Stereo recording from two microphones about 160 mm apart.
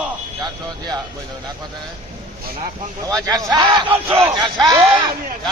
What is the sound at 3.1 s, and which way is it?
Speech, 20° right (ahead or behind).